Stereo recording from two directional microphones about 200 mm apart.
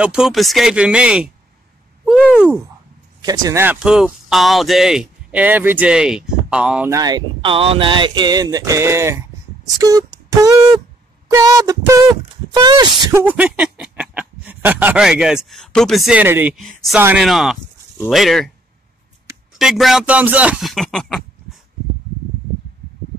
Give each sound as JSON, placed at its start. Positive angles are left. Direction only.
{"t": 0.0, "sound": "speech", "side_deg": -5}
{"t": 2.0, "sound": "a sound", "side_deg": -5}
{"t": 3.2, "sound": "speech", "side_deg": -15}
{"t": 6.9, "sound": "speech", "side_deg": -20}
{"t": 9.8, "sound": "beatboxing", "side_deg": -15}
{"t": 11.3, "sound": "speech", "side_deg": -15}
{"t": 13.2, "sound": "speech", "side_deg": -10}
{"t": 19.6, "sound": "speech", "side_deg": 0}